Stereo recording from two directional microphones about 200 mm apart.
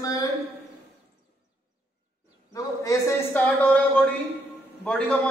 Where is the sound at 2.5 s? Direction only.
15° left (ahead or behind).